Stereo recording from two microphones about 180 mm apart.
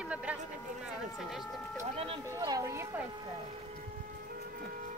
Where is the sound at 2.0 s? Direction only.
30° right (ahead or behind).